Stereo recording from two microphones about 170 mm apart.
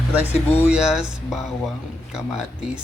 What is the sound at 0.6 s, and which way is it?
Speech, 5° right (ahead or behind).